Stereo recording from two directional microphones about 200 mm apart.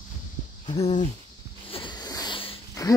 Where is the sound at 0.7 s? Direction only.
30° left (ahead or behind).